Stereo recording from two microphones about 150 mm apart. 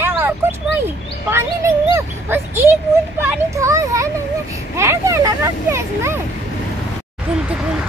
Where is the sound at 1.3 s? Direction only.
20° right (ahead or behind).